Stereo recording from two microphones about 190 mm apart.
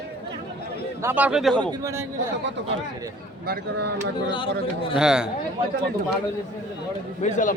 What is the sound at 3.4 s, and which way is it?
Speech, 55° right (ahead or behind).